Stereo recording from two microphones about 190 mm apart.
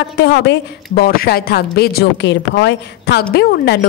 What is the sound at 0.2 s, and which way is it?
A woman's voice, 65° left (ahead or behind).